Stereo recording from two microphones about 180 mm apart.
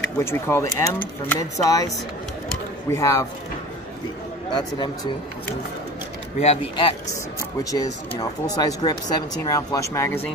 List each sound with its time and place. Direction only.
0.2 s speech: 15° left (ahead or behind)
2.9 s speech: 20° left (ahead or behind)
4.5 s speech: 25° left (ahead or behind)
6.4 s speech: 35° left (ahead or behind)
7.7 s speech: 20° left (ahead or behind)